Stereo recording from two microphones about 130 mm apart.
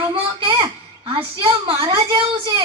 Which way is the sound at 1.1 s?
45° right (ahead or behind).